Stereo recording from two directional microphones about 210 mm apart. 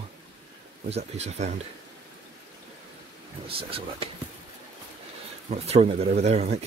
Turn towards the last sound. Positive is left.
turn(degrees=-30)  # may be behind; listen again after turning